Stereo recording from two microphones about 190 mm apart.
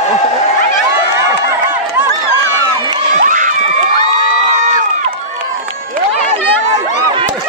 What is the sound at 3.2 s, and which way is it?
Crowd, 45° right (ahead or behind).